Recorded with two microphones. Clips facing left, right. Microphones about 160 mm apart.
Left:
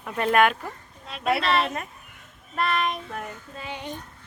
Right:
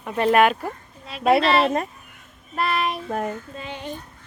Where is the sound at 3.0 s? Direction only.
40° right (ahead or behind).